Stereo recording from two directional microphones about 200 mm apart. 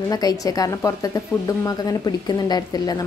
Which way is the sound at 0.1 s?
20° left (ahead or behind).